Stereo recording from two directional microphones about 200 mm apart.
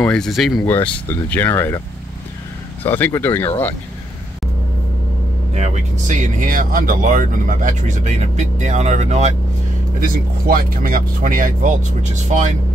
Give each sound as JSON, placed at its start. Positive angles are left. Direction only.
{"t": 0.0, "sound": "speech", "side_deg": 5}
{"t": 2.8, "sound": "speech", "side_deg": 10}
{"t": 5.5, "sound": "speech", "side_deg": -35}